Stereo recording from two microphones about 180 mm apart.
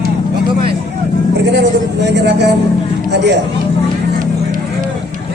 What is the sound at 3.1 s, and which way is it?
Speech, 70° right (ahead or behind).